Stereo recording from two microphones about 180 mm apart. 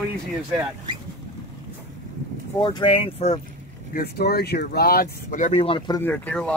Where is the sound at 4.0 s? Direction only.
65° left (ahead or behind); by 5.6 s 45° left (ahead or behind).